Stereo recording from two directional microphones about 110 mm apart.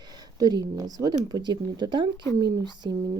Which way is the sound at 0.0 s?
40° right (ahead or behind).